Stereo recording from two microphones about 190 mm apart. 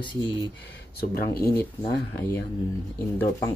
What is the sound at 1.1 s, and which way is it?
Speech, 55° left (ahead or behind).